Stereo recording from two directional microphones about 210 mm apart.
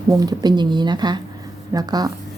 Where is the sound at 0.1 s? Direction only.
15° right (ahead or behind).